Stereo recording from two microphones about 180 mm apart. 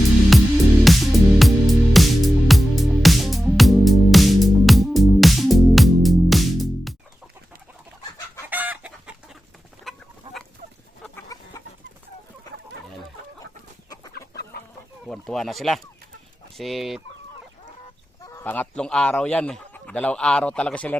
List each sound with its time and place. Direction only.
0.3 s music: centre (ahead or behind)
8.4 s chicken: 10° right (ahead or behind)
10.3 s fowl: 25° right (ahead or behind)
11.3 s chicken: 20° left (ahead or behind)
15.0 s a sound: 5° left (ahead or behind)
16.6 s fowl: centre (ahead or behind)
18.2 s chicken: 20° left (ahead or behind)
18.4 s a man's voice: 10° left (ahead or behind)